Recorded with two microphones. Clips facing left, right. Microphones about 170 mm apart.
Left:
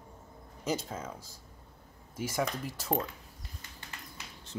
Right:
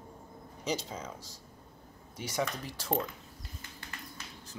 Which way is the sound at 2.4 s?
5° left (ahead or behind).